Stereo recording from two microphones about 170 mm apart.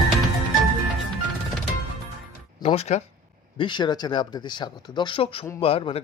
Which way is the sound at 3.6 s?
25° left (ahead or behind).